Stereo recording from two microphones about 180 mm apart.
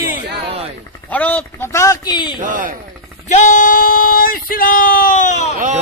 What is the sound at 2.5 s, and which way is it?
Speech, 50° right (ahead or behind).